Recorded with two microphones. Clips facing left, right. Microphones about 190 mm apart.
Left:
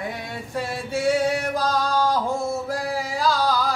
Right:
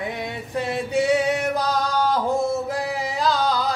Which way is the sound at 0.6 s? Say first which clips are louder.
Right 4 dB; 20° right (ahead or behind).